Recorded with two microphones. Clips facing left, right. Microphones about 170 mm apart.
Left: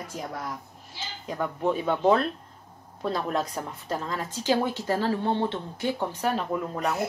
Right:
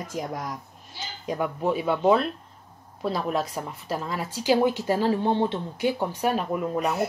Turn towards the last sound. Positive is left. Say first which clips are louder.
# right 2 dB
turn(degrees=-15)  # may be behind; listen again after turning